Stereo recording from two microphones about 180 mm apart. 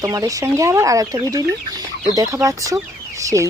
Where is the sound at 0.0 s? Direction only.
20° right (ahead or behind).